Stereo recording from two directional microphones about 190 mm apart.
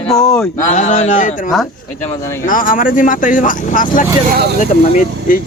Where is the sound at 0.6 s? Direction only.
40° left (ahead or behind).